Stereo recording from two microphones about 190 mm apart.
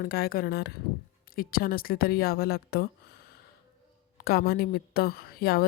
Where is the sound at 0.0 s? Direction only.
55° left (ahead or behind).